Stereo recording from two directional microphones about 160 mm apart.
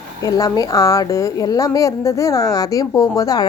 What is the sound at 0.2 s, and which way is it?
A woman's voice, 20° left (ahead or behind).